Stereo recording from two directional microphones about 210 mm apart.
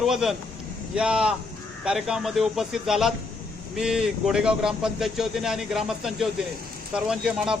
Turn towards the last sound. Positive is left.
turn(degrees=-5)  # may be behind; listen again after turning